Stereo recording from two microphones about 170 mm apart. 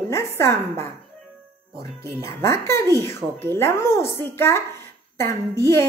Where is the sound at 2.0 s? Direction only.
15° left (ahead or behind).